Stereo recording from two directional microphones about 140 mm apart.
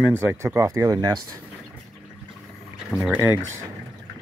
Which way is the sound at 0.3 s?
15° right (ahead or behind).